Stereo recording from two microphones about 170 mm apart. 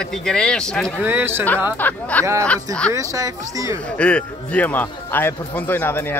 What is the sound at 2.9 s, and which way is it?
Speech, 20° right (ahead or behind).